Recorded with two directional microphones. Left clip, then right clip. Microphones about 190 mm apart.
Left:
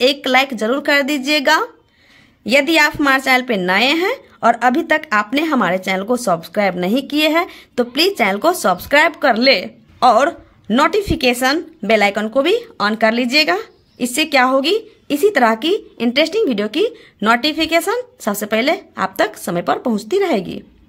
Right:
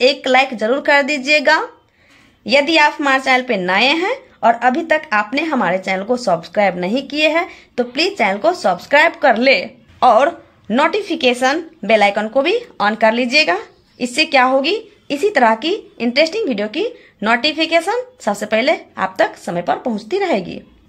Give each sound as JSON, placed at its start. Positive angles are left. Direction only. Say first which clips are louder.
{"t": 0.0, "sound": "a woman's voice", "louder": "right 1 dB", "side_deg": 20}
{"t": 20.2, "sound": "a woman's voice", "louder": "even", "side_deg": 20}